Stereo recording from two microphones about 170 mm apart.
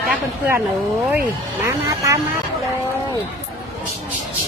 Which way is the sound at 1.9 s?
20° right (ahead or behind).